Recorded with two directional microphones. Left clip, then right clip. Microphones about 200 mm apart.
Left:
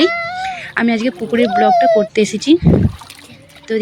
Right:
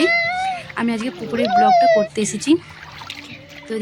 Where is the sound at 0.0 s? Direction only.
20° left (ahead or behind).